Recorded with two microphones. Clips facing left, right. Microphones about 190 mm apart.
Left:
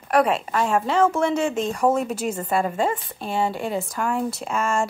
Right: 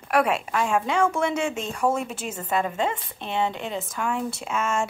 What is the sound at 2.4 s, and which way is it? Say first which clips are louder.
A woman's voice: left 1 dB; 5° left (ahead or behind).